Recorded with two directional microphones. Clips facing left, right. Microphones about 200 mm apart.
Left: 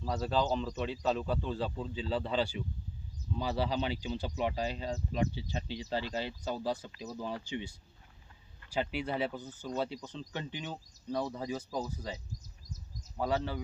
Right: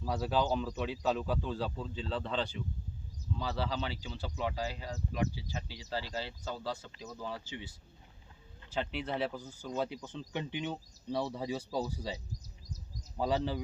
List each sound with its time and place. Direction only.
0.1 s speech: centre (ahead or behind); by 7.6 s 15° left (ahead or behind)
8.7 s speech: 5° left (ahead or behind)
10.0 s speech: 10° right (ahead or behind)
13.1 s speech: 15° right (ahead or behind)